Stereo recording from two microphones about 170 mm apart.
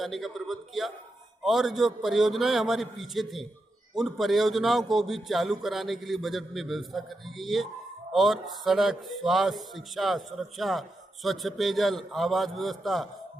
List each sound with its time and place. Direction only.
0.0 s speech: centre (ahead or behind)